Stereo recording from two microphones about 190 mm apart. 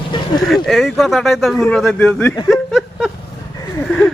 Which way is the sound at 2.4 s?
Centre (ahead or behind).